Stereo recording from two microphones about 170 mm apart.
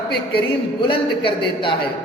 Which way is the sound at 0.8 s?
30° left (ahead or behind).